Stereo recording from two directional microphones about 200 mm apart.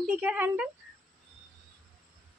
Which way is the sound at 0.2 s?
5° right (ahead or behind).